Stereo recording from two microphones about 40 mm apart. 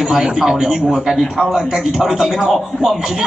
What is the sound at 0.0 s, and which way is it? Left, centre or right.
A man's voice, centre.